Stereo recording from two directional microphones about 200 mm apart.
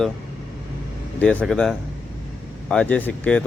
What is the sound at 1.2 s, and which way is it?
Speech, 5° left (ahead or behind).